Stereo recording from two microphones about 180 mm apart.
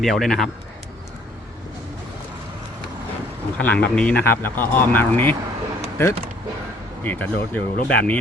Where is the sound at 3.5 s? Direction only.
10° left (ahead or behind).